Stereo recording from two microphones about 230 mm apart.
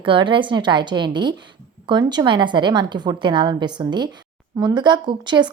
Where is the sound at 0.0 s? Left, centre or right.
Right.